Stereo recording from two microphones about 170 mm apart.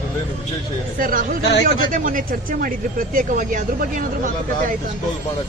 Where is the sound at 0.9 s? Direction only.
55° right (ahead or behind).